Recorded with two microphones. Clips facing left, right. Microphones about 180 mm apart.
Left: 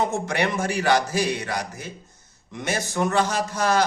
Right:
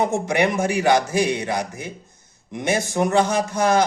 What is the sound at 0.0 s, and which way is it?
A man's voice, 15° right (ahead or behind).